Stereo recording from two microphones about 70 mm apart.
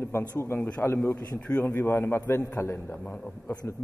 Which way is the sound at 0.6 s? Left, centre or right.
Centre.